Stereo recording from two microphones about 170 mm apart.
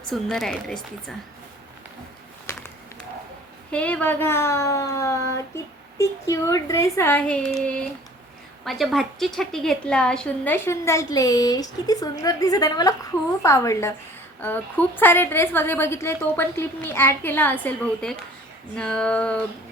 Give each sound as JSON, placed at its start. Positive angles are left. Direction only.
{"t": 0.1, "sound": "a woman's voice", "side_deg": 0}
{"t": 3.7, "sound": "a woman's voice", "side_deg": 5}